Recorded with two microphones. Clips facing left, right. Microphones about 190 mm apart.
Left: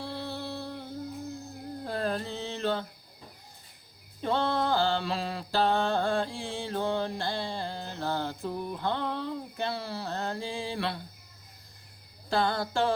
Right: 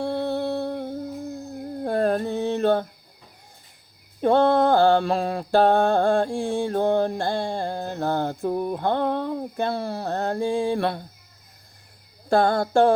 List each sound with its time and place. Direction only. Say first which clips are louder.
0.0 s music: right 11 dB; 55° right (ahead or behind)
1.8 s a sound: right 10 dB; 50° right (ahead or behind)
4.2 s mantra: right 10 dB; 50° right (ahead or behind)
12.3 s mantra: right 9 dB; 50° right (ahead or behind)